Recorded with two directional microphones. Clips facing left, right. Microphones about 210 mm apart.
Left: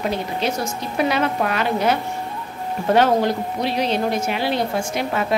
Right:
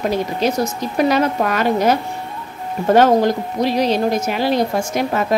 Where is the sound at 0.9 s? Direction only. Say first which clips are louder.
Right 4 dB; 45° right (ahead or behind).